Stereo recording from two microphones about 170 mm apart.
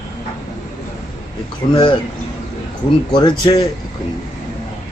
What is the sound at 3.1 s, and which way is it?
Speech, 25° left (ahead or behind).